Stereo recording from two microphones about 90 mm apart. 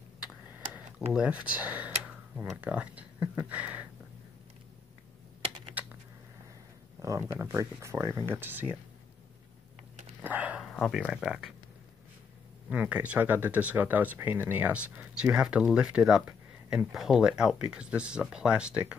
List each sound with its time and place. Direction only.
0.7 s speech: 10° right (ahead or behind)
5.8 s a sound: 15° right (ahead or behind)
7.0 s speech: 35° right (ahead or behind)
8.3 s speech: 20° right (ahead or behind)
10.2 s dog: 15° right (ahead or behind)
10.6 s a sound: 5° left (ahead or behind)
11.1 s speech: 5° right (ahead or behind)
12.6 s speech: 15° right (ahead or behind)